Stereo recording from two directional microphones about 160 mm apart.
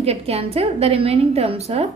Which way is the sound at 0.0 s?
40° right (ahead or behind).